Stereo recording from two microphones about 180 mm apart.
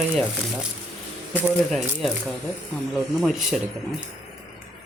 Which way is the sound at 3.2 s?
Centre (ahead or behind).